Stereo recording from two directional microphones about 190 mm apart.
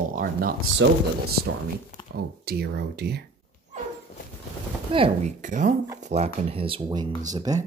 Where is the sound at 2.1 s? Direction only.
55° right (ahead or behind).